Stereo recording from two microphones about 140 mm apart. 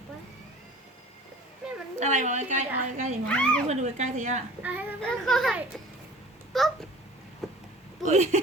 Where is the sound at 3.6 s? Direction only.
55° right (ahead or behind).